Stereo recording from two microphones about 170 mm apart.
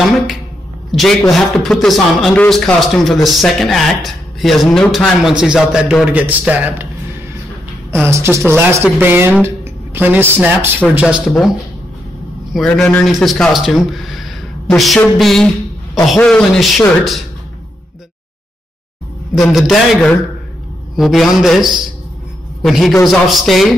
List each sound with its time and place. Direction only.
0.9 s a man's voice: centre (ahead or behind)
7.9 s a woman's voice: 15° right (ahead or behind)
12.5 s a man's voice: centre (ahead or behind)
19.5 s a man's voice: centre (ahead or behind)